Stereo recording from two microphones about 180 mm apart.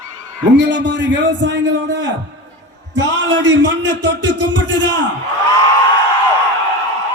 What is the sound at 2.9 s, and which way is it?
Speech, 80° right.